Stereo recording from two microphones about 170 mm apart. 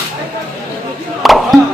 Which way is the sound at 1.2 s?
Centre (ahead or behind).